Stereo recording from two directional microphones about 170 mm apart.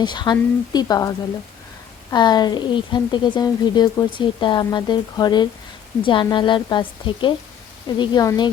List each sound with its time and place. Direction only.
0.0 s speech: 25° left (ahead or behind)